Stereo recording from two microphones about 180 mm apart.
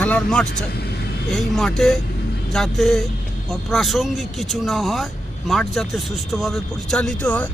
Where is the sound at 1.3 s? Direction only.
Centre (ahead or behind).